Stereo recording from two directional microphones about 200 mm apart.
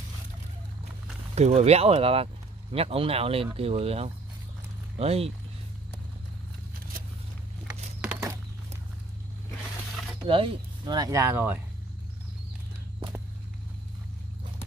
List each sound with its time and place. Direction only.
1.3 s speech: 30° right (ahead or behind)
10.2 s speech: 25° right (ahead or behind); by 11.6 s 10° right (ahead or behind)